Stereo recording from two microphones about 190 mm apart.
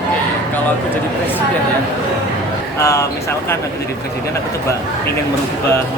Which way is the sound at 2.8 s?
15° left (ahead or behind).